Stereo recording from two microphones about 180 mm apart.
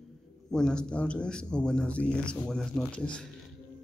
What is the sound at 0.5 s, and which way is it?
A man's voice, 5° left (ahead or behind).